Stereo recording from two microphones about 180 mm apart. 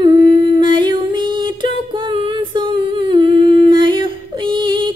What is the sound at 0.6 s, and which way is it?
Music, 25° right (ahead or behind).